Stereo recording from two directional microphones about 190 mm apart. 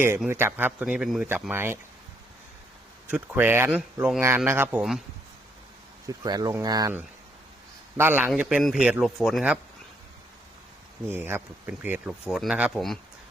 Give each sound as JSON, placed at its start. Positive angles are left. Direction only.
{"t": 0.3, "sound": "speech", "side_deg": -10}
{"t": 3.1, "sound": "speech", "side_deg": -10}
{"t": 6.1, "sound": "speech", "side_deg": -20}
{"t": 7.9, "sound": "speech", "side_deg": -10}
{"t": 11.1, "sound": "speech", "side_deg": -10}